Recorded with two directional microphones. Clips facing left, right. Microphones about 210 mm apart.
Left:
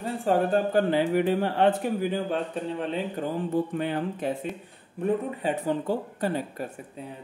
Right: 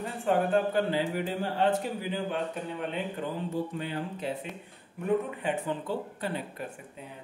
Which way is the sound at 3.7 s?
60° left (ahead or behind).